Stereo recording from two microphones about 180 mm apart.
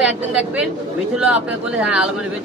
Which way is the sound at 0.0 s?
5° right (ahead or behind).